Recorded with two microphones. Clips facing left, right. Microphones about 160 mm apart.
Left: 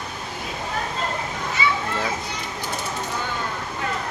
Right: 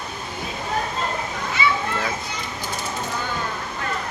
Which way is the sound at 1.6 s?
40° left (ahead or behind).